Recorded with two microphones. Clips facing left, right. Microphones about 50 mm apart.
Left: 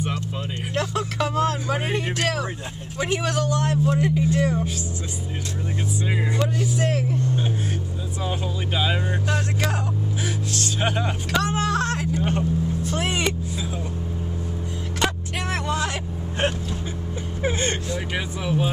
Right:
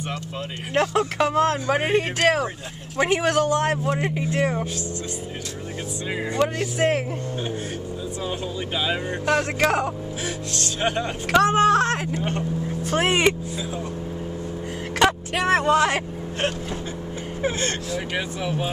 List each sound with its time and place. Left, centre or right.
0.7 s a man's voice: right
6.8 s a man's voice: right
8.3 s speech: centre
9.2 s speech: right
10.2 s speech: centre
11.3 s a man's voice: right
15.0 s vehicle: right
17.4 s speech: centre
17.9 s speech: centre